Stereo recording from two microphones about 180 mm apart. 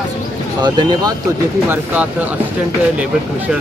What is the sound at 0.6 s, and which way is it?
Speech, 20° right (ahead or behind).